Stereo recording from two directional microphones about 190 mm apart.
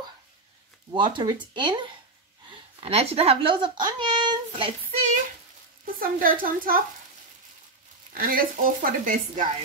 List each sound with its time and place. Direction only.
0.9 s a child's voice: 25° right (ahead or behind)
5.9 s a woman's voice: 50° right (ahead or behind)
8.2 s a woman's voice: 50° right (ahead or behind)